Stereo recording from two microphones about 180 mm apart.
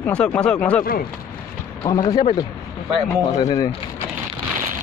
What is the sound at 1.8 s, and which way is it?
Speech, 20° left (ahead or behind).